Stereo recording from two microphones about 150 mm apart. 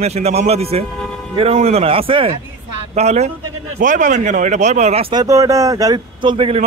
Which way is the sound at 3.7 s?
60° right (ahead or behind).